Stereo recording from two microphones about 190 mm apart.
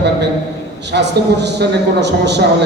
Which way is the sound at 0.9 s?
65° right (ahead or behind).